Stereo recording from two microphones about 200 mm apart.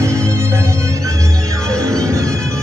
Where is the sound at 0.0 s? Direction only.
15° right (ahead or behind).